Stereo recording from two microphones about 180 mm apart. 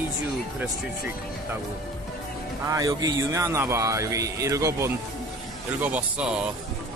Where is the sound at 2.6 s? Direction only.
20° right (ahead or behind).